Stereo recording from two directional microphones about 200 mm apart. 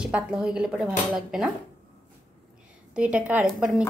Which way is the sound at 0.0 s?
5° right (ahead or behind).